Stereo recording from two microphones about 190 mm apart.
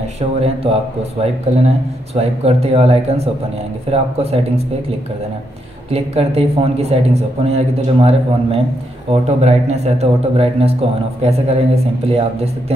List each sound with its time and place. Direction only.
0.4 s speech: 30° right (ahead or behind)
5.9 s speech: 30° right (ahead or behind)